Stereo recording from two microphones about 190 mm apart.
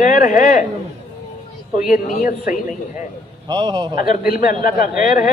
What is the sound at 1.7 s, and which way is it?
Speech, 40° left (ahead or behind).